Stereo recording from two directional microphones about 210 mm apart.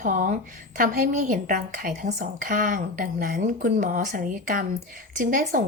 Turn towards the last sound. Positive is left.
turn(degrees=-40)  # may be behind; listen again after turning